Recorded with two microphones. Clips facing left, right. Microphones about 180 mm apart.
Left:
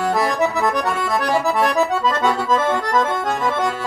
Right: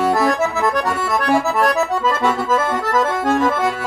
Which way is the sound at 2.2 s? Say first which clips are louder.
Even; 5° right (ahead or behind).